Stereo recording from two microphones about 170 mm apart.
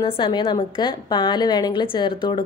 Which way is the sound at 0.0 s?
30° left (ahead or behind).